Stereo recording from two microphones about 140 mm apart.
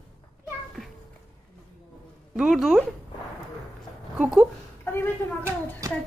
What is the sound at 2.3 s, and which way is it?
Speech, centre (ahead or behind).